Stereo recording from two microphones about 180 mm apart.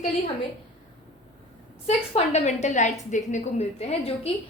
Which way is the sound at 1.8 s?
35° left (ahead or behind).